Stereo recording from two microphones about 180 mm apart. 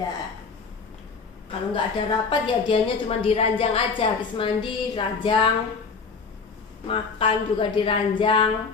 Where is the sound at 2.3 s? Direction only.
30° left (ahead or behind).